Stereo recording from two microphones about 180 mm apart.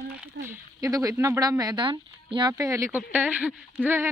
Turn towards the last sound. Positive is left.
turn(degrees=-10)  # may be behind; listen again after turning